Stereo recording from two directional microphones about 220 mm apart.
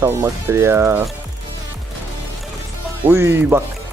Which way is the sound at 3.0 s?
10° right (ahead or behind).